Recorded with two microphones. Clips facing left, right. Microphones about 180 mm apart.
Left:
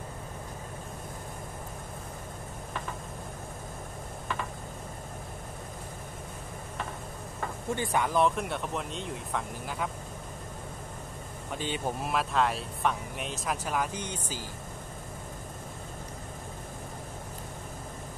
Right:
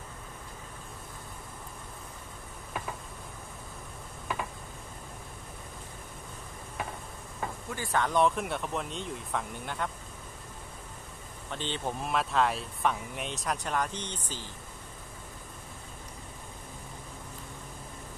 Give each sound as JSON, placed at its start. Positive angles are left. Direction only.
{"t": 7.7, "sound": "speech", "side_deg": 20}
{"t": 8.0, "sound": "speech", "side_deg": 0}
{"t": 11.5, "sound": "speech", "side_deg": 10}